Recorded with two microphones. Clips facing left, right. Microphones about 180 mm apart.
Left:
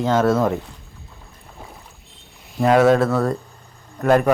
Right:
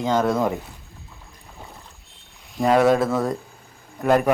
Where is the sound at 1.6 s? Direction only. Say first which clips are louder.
Left 2 dB; 5° left (ahead or behind).